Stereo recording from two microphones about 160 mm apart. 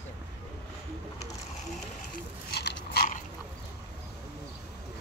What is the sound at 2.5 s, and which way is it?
Biting, 90° left.